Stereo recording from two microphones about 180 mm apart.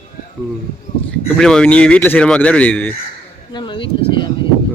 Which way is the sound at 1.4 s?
5° left (ahead or behind).